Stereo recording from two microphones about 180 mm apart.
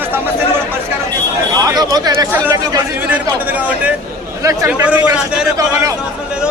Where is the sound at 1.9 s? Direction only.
20° right (ahead or behind).